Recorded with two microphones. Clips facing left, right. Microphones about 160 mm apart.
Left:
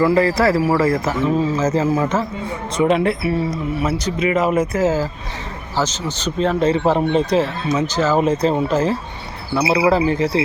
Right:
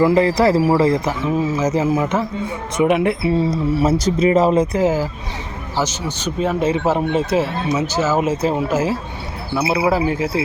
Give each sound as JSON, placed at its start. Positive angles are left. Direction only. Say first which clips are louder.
{"t": 0.0, "sound": "speech", "louder": "right 1 dB", "side_deg": -20}
{"t": 3.8, "sound": "speech", "louder": "right 5 dB", "side_deg": -35}
{"t": 4.7, "sound": "speech", "louder": "right 1 dB", "side_deg": -15}